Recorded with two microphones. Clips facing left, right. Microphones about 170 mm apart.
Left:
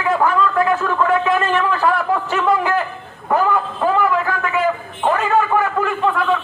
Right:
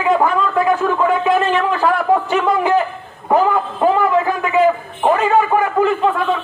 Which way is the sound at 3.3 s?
20° right (ahead or behind).